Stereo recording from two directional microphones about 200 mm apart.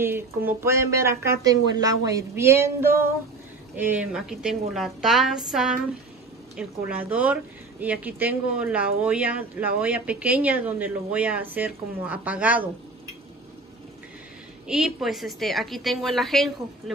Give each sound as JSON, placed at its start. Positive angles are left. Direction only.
{"t": 0.5, "sound": "a woman's voice", "side_deg": -15}
{"t": 14.7, "sound": "a woman's voice", "side_deg": -5}